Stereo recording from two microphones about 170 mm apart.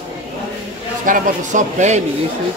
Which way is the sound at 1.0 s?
50° right (ahead or behind).